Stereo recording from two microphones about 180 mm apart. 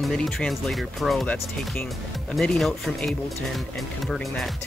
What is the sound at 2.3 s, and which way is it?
Speech, centre (ahead or behind).